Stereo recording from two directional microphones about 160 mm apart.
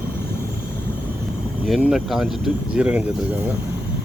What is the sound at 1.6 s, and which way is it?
Speech, centre (ahead or behind).